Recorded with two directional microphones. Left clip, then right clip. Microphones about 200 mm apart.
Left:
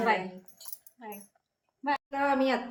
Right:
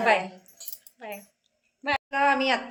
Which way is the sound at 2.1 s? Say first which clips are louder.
Right 5 dB; 5° left (ahead or behind).